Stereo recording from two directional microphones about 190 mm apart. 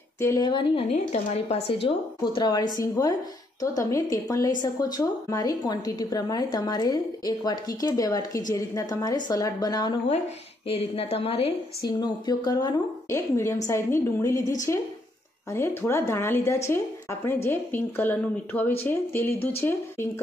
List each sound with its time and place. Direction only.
0.2 s a woman's voice: 20° left (ahead or behind)
10.7 s a woman's voice: 30° left (ahead or behind); by 20.1 s 10° left (ahead or behind)